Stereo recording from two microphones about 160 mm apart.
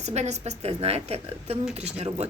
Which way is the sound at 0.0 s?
45° right (ahead or behind).